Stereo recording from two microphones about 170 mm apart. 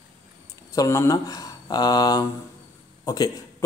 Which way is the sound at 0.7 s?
20° left (ahead or behind).